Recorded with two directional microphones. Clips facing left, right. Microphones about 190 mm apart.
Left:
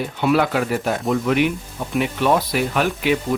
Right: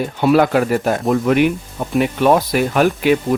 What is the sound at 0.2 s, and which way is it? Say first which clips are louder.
Speech: right 5 dB; 40° right (ahead or behind).